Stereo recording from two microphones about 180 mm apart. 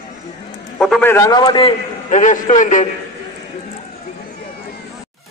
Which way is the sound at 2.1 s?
45° left (ahead or behind).